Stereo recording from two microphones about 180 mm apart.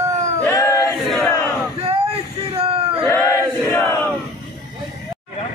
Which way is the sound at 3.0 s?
15° left (ahead or behind).